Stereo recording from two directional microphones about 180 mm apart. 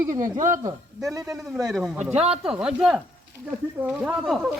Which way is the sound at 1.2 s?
Centre (ahead or behind).